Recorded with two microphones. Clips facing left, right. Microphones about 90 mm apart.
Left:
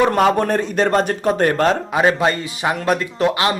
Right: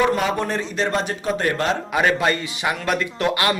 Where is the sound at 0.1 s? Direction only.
50° left (ahead or behind).